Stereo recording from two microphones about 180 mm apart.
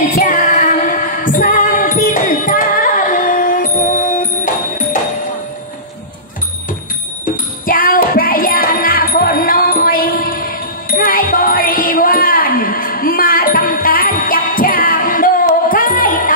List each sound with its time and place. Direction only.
0.1 s music: 45° left (ahead or behind)
7.6 s music: 50° left (ahead or behind)